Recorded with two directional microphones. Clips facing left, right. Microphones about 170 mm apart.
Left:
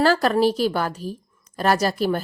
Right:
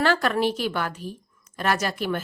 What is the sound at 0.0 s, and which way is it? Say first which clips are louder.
Speech: left 4 dB; 35° left (ahead or behind).